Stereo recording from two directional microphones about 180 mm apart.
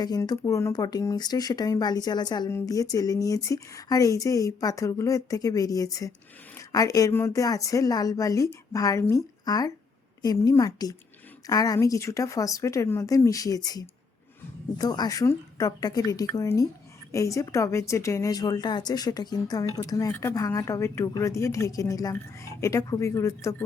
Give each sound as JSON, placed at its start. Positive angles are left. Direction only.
{"t": 0.0, "sound": "a woman's voice", "side_deg": 20}